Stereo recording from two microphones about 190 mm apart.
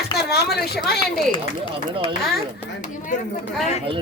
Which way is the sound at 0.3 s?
60° left (ahead or behind).